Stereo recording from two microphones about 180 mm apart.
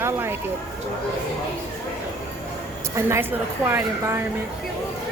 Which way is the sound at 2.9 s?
15° right (ahead or behind).